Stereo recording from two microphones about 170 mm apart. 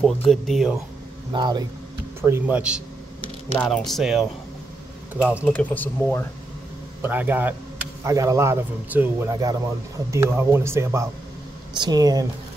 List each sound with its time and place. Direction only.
0.0 s speech: centre (ahead or behind)
1.3 s speech: 25° right (ahead or behind)
2.2 s a man's voice: 10° right (ahead or behind)
3.5 s a man's voice: 5° left (ahead or behind)
5.5 s speech: 10° left (ahead or behind)
7.0 s a man's voice: 10° right (ahead or behind)